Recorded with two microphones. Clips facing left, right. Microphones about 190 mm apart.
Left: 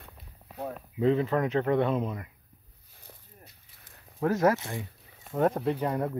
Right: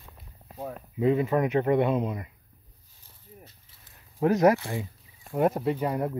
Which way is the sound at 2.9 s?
65° left (ahead or behind).